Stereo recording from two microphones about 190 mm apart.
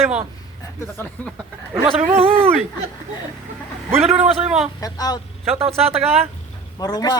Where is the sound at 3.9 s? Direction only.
35° right (ahead or behind).